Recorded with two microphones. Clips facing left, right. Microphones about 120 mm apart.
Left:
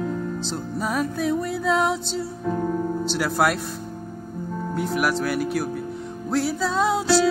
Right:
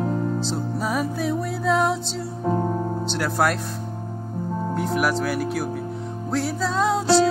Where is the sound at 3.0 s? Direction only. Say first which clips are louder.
Even; 5° left (ahead or behind).